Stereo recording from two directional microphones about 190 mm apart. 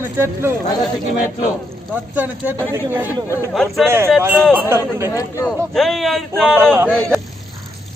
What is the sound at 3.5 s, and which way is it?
Speech, centre (ahead or behind).